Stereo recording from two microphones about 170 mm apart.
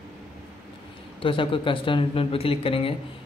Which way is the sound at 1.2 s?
30° left (ahead or behind).